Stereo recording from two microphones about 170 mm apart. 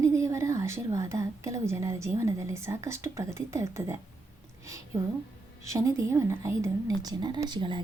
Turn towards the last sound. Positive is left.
turn(degrees=-30)  # may be behind; listen again after turning